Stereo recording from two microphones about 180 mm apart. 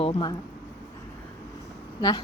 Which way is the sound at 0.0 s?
30° left (ahead or behind).